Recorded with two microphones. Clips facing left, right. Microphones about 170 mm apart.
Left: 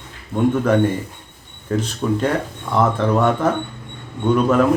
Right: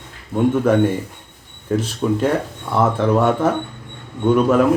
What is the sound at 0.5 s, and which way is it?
Speech, 5° right (ahead or behind).